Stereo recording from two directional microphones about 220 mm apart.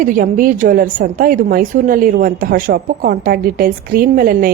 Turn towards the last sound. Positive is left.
turn(degrees=-40)  # may be behind; listen again after turning